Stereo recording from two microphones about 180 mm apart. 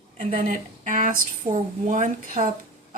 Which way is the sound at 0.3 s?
45° right (ahead or behind).